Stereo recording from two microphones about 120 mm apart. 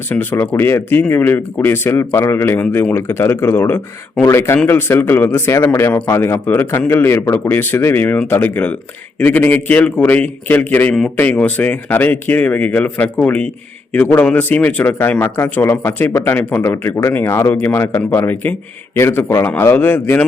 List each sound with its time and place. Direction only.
0.1 s speech: 15° left (ahead or behind)